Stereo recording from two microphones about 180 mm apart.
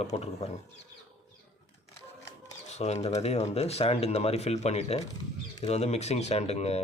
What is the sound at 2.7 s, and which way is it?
Speech, 35° left (ahead or behind).